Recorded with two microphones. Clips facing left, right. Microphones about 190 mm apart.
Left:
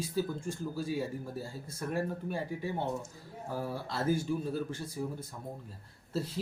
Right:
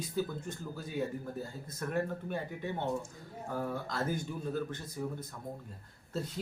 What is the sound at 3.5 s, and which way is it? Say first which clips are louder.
Speech: even; 5° left (ahead or behind).